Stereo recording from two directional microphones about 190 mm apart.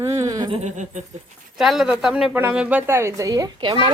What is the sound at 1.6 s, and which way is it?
A woman's voice, centre (ahead or behind).